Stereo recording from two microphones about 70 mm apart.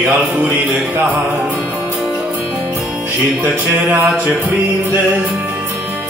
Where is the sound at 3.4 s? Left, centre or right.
Right.